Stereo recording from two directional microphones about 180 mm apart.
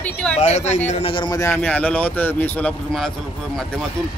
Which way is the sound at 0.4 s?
40° left (ahead or behind).